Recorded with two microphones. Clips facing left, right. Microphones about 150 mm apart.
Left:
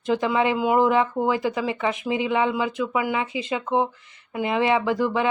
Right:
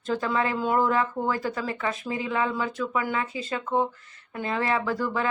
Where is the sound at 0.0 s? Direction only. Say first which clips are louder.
Left 5 dB; 15° left (ahead or behind).